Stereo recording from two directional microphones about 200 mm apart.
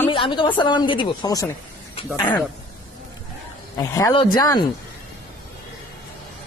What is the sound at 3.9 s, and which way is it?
Speech, 20° left (ahead or behind).